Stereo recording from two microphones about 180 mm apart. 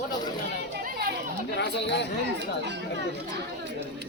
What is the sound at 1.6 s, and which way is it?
Speech, 75° left (ahead or behind).